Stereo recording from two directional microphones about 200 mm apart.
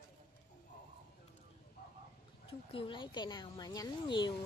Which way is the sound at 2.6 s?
25° left (ahead or behind).